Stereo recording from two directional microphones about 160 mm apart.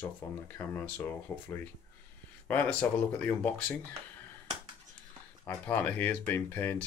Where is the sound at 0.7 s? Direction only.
10° left (ahead or behind).